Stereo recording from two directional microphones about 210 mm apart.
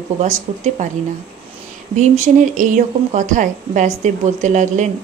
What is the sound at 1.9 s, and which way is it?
A woman's voice, 35° right (ahead or behind).